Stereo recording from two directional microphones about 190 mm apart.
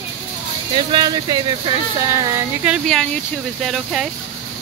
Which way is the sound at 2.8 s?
5° left (ahead or behind).